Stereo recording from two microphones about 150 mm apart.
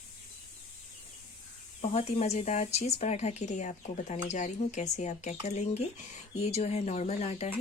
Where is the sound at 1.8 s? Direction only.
45° left (ahead or behind).